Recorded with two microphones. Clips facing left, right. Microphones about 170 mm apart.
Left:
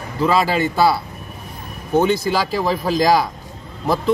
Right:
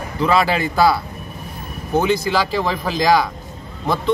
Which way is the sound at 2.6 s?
40° left (ahead or behind).